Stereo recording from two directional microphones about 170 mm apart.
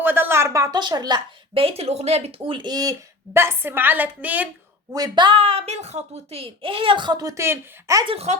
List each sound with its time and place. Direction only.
0.0 s a woman's voice: 10° right (ahead or behind)
4.9 s a woman's voice: 20° right (ahead or behind)
8.0 s speech: 35° right (ahead or behind)